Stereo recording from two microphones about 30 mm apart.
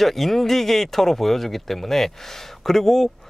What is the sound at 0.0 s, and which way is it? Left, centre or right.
Speech, centre.